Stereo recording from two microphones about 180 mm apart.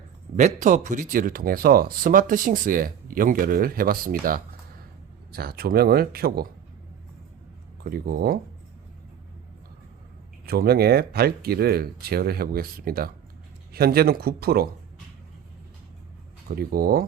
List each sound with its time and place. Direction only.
0.3 s speech: 45° right (ahead or behind)
7.9 s speech: 55° right (ahead or behind)
10.4 s speech: 60° right (ahead or behind)
16.6 s speech: 55° right (ahead or behind)